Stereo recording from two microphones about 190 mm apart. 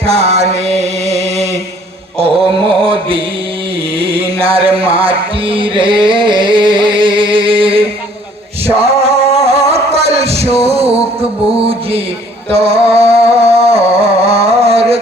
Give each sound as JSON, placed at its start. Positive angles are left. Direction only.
{"t": 0.0, "sound": "mantra", "side_deg": -30}
{"t": 4.0, "sound": "music", "side_deg": -30}